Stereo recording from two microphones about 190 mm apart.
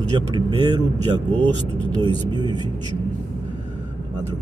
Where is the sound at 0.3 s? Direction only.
20° right (ahead or behind).